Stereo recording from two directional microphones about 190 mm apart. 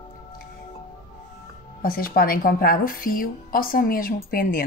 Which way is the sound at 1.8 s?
50° left (ahead or behind).